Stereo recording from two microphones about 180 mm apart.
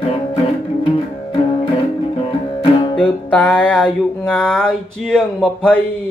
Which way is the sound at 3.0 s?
5° left (ahead or behind).